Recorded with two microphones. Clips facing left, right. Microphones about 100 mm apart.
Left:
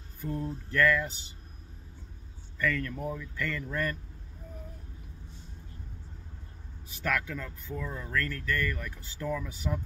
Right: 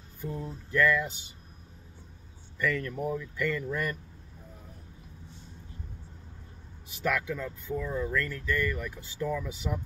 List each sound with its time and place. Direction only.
0.2 s speech: 15° right (ahead or behind)
2.6 s speech: 15° right (ahead or behind)
7.0 s speech: 20° right (ahead or behind)